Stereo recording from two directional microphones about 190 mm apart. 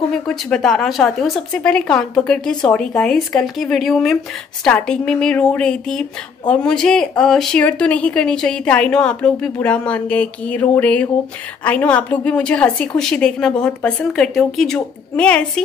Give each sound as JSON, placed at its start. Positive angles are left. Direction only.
{"t": 0.1, "sound": "speech", "side_deg": 5}